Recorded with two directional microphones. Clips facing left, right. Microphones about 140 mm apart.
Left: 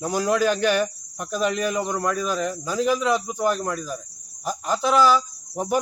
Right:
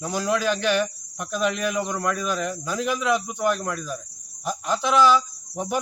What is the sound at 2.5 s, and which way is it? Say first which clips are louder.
Speech: left 1 dB; 5° left (ahead or behind).